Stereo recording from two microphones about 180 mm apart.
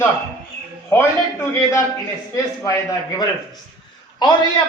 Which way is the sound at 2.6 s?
20° left (ahead or behind).